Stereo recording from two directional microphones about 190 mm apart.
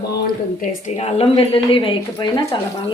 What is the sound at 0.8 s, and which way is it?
Speech, 35° left (ahead or behind).